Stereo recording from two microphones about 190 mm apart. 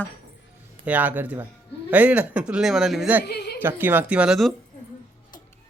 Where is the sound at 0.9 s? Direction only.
10° right (ahead or behind).